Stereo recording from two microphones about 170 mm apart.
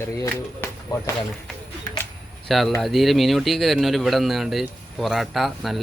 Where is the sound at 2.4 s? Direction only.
Centre (ahead or behind).